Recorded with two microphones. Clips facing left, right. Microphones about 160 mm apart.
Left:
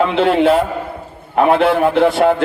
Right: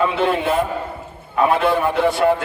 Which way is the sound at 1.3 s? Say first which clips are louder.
Left 4 dB; 55° left (ahead or behind).